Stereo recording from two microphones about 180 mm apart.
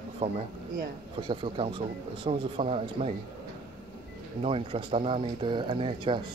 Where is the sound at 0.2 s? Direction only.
35° right (ahead or behind).